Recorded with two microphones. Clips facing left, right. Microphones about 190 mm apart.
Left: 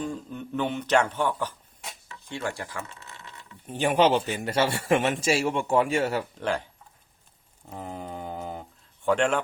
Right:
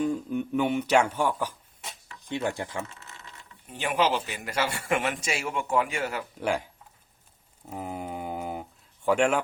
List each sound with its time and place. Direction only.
0.0 s speech: 10° right (ahead or behind)
3.7 s a man's voice: 30° left (ahead or behind)
6.4 s speech: 10° right (ahead or behind)
7.7 s mantra: 10° right (ahead or behind)
9.0 s speech: 10° right (ahead or behind)